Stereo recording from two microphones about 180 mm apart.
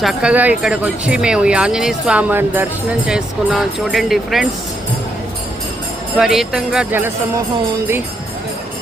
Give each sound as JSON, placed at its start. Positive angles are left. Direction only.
{"t": 0.0, "sound": "speech", "side_deg": -5}
{"t": 6.1, "sound": "speech", "side_deg": 0}